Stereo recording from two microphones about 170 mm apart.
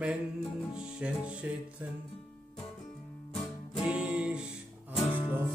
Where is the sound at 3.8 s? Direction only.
5° right (ahead or behind).